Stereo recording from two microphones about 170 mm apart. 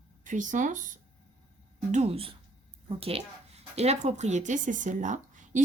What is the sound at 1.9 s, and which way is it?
Speech, 40° right (ahead or behind).